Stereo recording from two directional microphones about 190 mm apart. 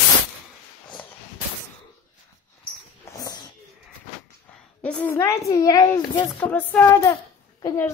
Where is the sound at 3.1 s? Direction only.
20° left (ahead or behind).